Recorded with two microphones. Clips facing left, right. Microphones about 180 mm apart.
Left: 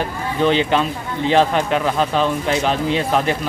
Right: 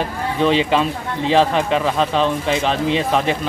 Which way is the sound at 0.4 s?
Centre (ahead or behind).